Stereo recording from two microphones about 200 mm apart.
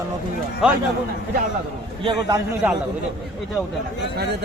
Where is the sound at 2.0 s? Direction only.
20° right (ahead or behind).